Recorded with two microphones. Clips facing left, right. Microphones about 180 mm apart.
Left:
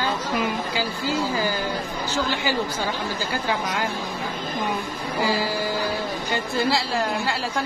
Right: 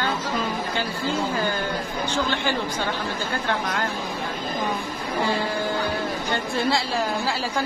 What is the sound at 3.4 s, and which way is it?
Speech, 5° left (ahead or behind).